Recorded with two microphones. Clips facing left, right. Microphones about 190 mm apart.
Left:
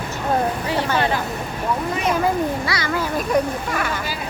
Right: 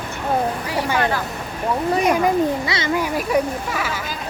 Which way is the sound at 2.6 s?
20° right (ahead or behind).